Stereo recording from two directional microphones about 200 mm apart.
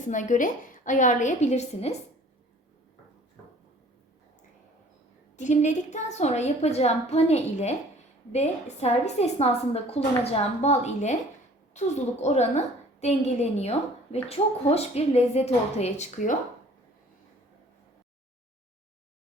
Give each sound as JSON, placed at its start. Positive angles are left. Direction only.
{"t": 0.0, "sound": "a woman's voice", "side_deg": 40}
{"t": 5.4, "sound": "a woman's voice", "side_deg": 35}